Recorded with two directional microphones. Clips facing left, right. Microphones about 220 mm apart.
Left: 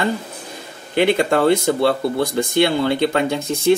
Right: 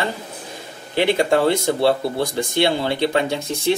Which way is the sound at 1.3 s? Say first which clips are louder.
Left 2 dB; 55° left (ahead or behind).